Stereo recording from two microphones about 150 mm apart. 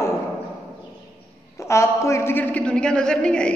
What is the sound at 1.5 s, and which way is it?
A man's voice, 20° left (ahead or behind).